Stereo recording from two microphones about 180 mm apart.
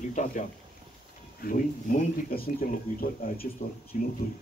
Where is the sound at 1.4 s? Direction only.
50° left (ahead or behind).